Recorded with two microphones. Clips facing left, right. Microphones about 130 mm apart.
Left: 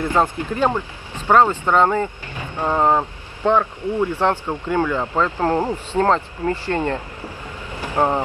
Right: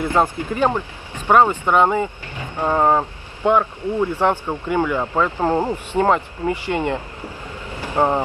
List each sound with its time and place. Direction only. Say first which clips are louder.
0.0 s speech: even; 10° right (ahead or behind)
7.7 s vehicle: even; 15° left (ahead or behind)